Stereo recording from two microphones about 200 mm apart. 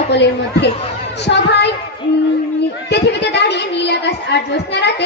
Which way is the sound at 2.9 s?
60° left (ahead or behind).